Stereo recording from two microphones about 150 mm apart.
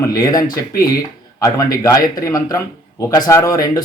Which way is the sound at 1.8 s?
25° left (ahead or behind).